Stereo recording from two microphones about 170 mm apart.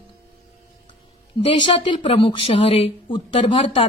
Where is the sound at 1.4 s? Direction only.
30° left (ahead or behind).